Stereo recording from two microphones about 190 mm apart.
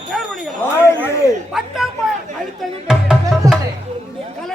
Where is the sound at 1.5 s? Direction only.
Centre (ahead or behind).